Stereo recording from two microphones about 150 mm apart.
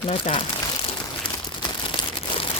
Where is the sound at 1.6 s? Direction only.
35° left (ahead or behind).